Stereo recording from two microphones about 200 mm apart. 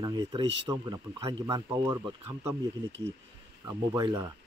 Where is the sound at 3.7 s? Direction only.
20° right (ahead or behind).